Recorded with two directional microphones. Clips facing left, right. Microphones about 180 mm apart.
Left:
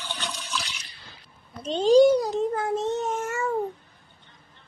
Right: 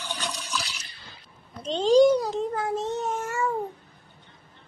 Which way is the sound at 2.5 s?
55° left (ahead or behind).